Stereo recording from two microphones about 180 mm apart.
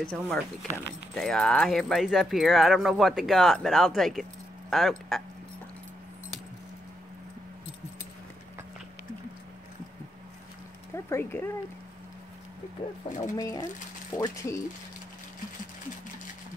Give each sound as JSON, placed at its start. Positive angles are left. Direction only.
{"t": 0.0, "sound": "speech", "side_deg": 5}
{"t": 11.1, "sound": "speech", "side_deg": 15}
{"t": 13.4, "sound": "speech", "side_deg": 20}